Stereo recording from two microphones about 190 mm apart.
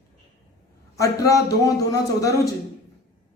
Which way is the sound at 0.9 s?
15° left (ahead or behind).